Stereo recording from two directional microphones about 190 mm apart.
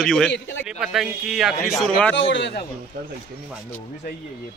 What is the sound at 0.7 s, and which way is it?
Speech, 5° right (ahead or behind).